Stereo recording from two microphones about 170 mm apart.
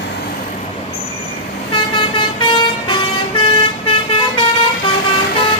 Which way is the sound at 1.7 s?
30° left (ahead or behind).